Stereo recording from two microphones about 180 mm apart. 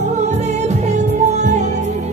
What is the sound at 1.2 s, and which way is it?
Music, 40° right (ahead or behind).